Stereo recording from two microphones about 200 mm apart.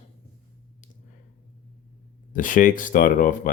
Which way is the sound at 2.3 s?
40° left (ahead or behind).